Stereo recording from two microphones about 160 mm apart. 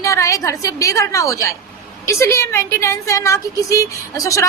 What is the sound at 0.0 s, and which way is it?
Speech, 20° left (ahead or behind).